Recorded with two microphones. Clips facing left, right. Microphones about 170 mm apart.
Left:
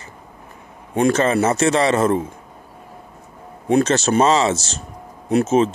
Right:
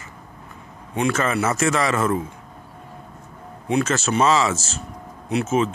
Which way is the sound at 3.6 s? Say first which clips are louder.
Left 5 dB; 40° left (ahead or behind).